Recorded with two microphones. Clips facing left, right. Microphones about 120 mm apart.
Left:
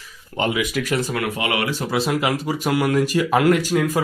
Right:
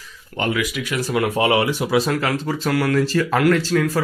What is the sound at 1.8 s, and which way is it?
Speech, centre (ahead or behind).